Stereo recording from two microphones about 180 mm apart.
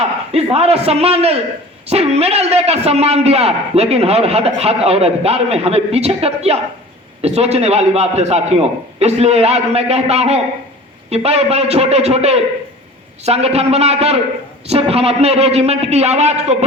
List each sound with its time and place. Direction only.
0.3 s a man's voice: 35° right (ahead or behind)